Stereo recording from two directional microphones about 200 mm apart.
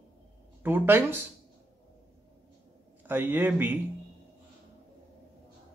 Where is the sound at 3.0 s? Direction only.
10° right (ahead or behind).